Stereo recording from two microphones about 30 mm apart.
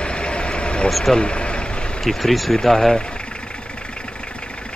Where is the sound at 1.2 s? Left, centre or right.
Left.